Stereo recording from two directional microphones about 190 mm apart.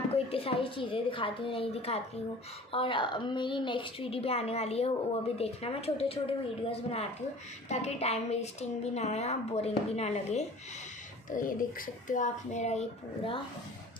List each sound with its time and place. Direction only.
0.1 s a woman's voice: 30° left (ahead or behind)
11.2 s a woman's voice: 45° left (ahead or behind)